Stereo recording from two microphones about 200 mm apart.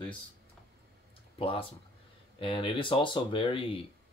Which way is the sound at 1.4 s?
25° left (ahead or behind).